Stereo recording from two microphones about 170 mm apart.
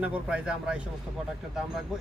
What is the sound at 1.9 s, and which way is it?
Speech, centre (ahead or behind).